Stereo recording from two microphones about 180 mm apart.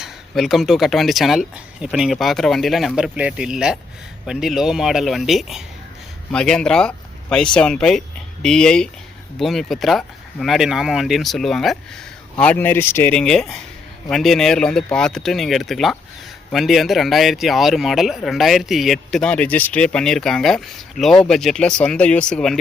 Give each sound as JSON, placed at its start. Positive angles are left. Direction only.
{"t": 0.0, "sound": "speech", "side_deg": 0}